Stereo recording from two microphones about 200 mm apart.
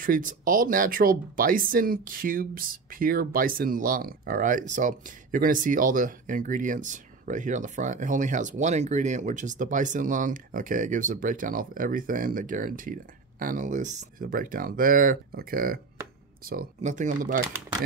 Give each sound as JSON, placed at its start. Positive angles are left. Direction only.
{"t": 0.0, "sound": "speech", "side_deg": -40}